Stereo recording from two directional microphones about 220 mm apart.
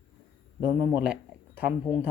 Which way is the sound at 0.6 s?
10° right (ahead or behind).